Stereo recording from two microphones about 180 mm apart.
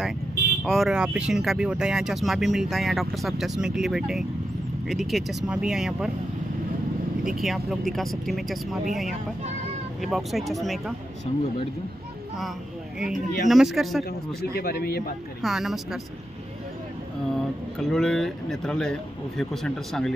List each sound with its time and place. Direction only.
0.7 s speech: centre (ahead or behind)
7.2 s speech: centre (ahead or behind)
10.0 s speech: centre (ahead or behind)
13.5 s speech: centre (ahead or behind)
14.4 s a man's voice: 55° left (ahead or behind)
15.4 s speech: centre (ahead or behind)
17.3 s speech: centre (ahead or behind)